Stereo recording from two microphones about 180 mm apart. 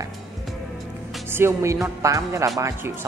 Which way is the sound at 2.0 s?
15° right (ahead or behind).